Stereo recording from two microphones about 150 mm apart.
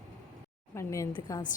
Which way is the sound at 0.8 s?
20° left (ahead or behind).